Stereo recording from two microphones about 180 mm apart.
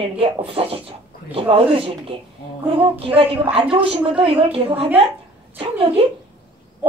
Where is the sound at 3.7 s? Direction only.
30° right (ahead or behind).